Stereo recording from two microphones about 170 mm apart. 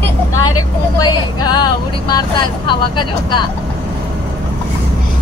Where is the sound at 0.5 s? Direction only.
25° left (ahead or behind).